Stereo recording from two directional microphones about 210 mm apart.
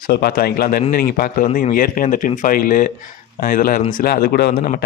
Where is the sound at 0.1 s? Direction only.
45° left (ahead or behind).